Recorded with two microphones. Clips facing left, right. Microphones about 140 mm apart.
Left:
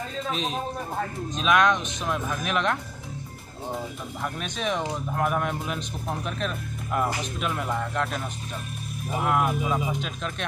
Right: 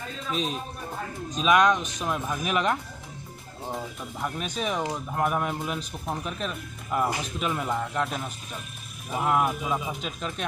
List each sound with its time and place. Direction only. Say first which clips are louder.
1.4 s speech: right 1 dB; 5° right (ahead or behind)